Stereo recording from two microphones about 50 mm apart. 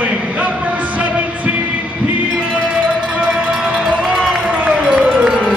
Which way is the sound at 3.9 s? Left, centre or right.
Centre.